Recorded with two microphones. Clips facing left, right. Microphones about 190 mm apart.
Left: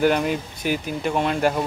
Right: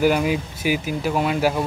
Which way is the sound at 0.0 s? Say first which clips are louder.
Right 1 dB; 5° right (ahead or behind).